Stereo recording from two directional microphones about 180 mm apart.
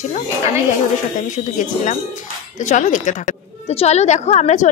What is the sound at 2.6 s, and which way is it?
Speech, 45° left (ahead or behind).